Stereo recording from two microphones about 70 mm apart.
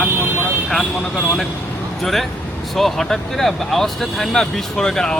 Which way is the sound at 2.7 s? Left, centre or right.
Centre.